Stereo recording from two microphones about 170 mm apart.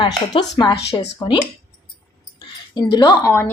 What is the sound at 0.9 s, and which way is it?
Speech, 15° left (ahead or behind).